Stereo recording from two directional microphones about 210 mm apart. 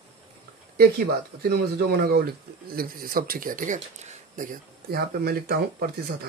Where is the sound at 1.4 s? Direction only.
50° right (ahead or behind).